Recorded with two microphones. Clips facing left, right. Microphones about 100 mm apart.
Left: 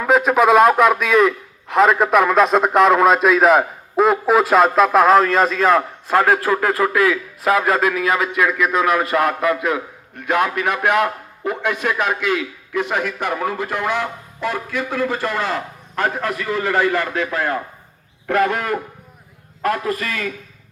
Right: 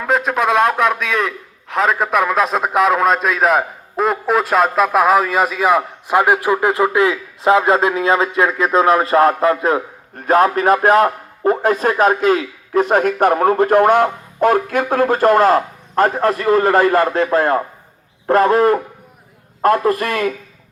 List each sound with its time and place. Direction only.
0.0 s a man's voice: centre (ahead or behind); by 19.9 s 40° right (ahead or behind)
19.9 s a man's voice: 55° right (ahead or behind)